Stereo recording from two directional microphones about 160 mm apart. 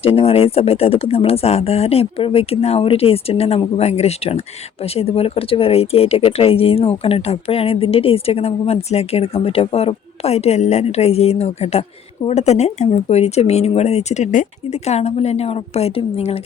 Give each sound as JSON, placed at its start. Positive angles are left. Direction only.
{"t": 0.0, "sound": "speech", "side_deg": 40}